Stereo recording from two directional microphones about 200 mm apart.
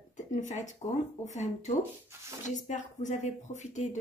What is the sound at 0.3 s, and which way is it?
Speech, 40° left (ahead or behind).